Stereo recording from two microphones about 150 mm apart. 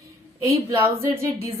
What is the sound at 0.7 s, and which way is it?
Speech, 15° right (ahead or behind).